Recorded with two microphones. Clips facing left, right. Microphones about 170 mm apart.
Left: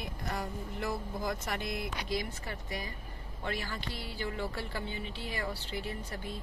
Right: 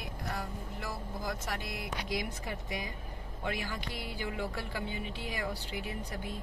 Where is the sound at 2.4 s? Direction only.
15° right (ahead or behind).